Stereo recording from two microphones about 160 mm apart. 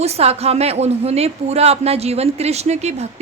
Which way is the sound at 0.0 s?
40° right (ahead or behind).